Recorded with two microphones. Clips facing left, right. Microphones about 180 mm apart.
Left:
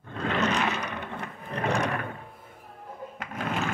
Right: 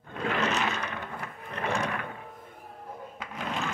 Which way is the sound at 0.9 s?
20° left (ahead or behind).